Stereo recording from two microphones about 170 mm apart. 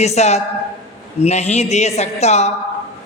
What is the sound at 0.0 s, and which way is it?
A man's voice, 40° left (ahead or behind).